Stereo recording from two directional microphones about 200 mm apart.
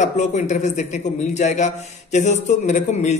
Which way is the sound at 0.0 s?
35° left (ahead or behind).